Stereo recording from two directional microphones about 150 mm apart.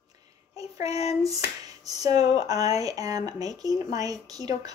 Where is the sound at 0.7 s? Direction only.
45° left (ahead or behind).